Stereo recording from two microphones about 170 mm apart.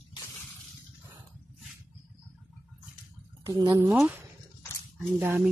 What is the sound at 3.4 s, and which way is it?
Speech, 20° right (ahead or behind).